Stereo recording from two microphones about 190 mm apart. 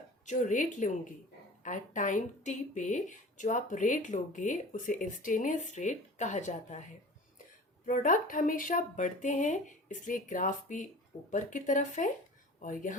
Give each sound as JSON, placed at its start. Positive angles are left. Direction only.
{"t": 0.3, "sound": "speech", "side_deg": 40}
{"t": 7.9, "sound": "speech", "side_deg": 45}